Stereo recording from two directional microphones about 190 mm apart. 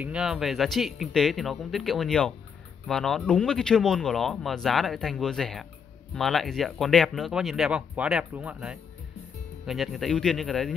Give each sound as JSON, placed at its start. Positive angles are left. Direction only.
{"t": 0.0, "sound": "speech", "side_deg": -5}